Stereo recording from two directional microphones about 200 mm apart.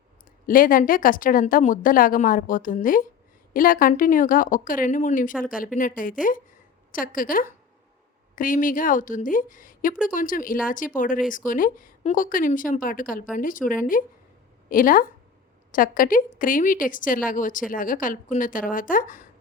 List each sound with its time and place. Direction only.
0.4 s speech: 45° left (ahead or behind)